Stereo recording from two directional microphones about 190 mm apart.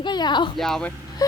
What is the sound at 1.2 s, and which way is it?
Speech, 20° left (ahead or behind).